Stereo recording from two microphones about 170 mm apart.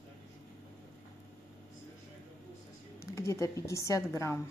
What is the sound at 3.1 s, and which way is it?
A woman's voice, 15° left (ahead or behind).